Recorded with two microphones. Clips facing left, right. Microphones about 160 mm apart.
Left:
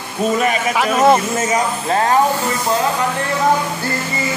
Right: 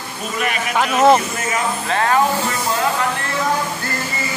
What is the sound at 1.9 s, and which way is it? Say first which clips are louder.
Speech: left 2 dB; 30° left (ahead or behind).